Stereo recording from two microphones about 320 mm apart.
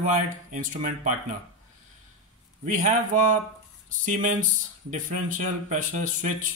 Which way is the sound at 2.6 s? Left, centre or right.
Right.